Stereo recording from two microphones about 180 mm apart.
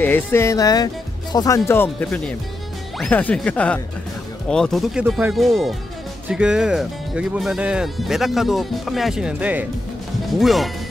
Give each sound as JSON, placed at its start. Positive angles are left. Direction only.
{"t": 0.0, "sound": "speech", "side_deg": 10}